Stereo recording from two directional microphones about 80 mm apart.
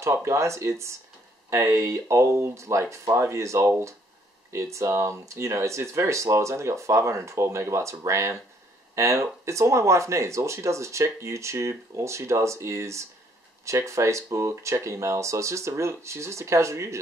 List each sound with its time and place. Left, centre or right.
0.0 s speech: right